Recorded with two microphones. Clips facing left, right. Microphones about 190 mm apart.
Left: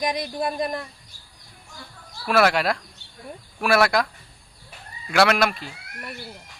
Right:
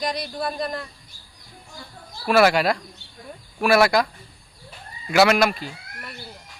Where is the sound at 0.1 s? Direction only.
15° left (ahead or behind).